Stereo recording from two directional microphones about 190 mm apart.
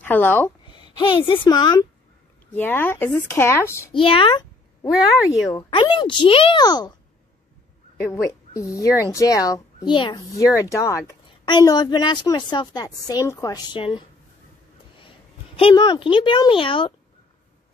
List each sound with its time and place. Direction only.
0.0 s speech: 10° left (ahead or behind)
0.7 s a woman's voice: 25° left (ahead or behind)
2.5 s speech: 10° left (ahead or behind)
3.9 s a child's voice: 30° left (ahead or behind)
4.9 s speech: centre (ahead or behind)
5.5 s speech: 25° left (ahead or behind)
8.0 s a woman's voice: 15° left (ahead or behind)